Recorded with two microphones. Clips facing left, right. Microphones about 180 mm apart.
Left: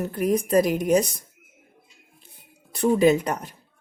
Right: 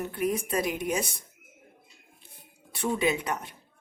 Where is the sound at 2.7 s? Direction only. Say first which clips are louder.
Left 9 dB; 40° left (ahead or behind).